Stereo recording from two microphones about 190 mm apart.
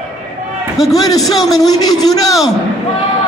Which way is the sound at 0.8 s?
20° left (ahead or behind).